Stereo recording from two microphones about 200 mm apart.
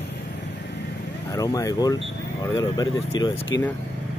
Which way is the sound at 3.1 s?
20° left (ahead or behind).